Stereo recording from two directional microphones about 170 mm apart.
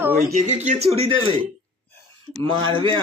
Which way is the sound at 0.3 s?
50° right (ahead or behind).